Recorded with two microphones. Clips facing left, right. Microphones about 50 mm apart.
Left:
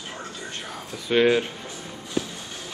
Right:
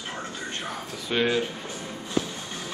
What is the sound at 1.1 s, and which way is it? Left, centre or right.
Speech, centre.